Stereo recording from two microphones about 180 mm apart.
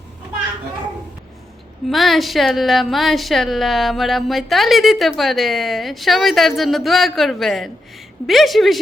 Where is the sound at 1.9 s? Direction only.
Centre (ahead or behind).